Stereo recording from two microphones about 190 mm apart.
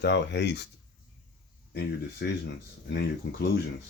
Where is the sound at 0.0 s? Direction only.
65° left (ahead or behind).